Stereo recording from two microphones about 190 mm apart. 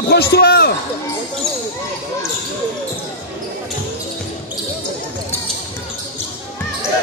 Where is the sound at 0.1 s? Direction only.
55° left (ahead or behind).